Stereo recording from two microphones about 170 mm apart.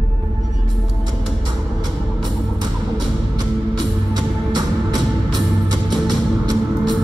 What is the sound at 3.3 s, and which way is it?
Music, 25° right (ahead or behind).